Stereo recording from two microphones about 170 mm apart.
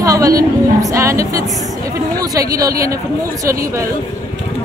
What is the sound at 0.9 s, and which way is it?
Speech, 20° right (ahead or behind).